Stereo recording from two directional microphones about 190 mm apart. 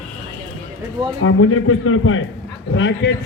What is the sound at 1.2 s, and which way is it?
A man's voice, 90° left.